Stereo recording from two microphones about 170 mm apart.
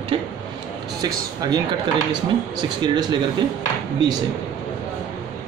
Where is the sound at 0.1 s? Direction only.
35° right (ahead or behind).